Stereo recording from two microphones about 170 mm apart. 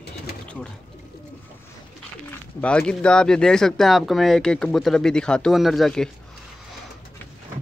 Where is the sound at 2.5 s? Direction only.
5° left (ahead or behind).